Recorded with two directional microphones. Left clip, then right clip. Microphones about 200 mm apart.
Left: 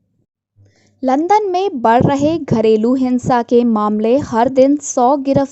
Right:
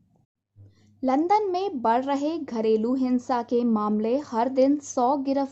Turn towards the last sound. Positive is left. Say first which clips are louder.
# left 10 dB
turn(degrees=35)  # may be behind; listen again after turning